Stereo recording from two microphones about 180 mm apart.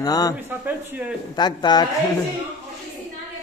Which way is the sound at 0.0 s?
20° left (ahead or behind).